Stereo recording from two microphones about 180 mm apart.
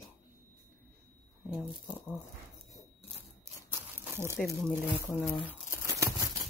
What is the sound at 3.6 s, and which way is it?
Crumpling, 10° right (ahead or behind).